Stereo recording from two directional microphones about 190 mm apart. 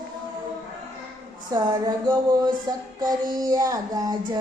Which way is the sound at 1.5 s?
20° right (ahead or behind).